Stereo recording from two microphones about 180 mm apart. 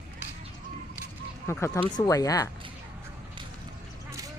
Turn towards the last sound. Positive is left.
turn(degrees=20)  # may be behind; listen again after turning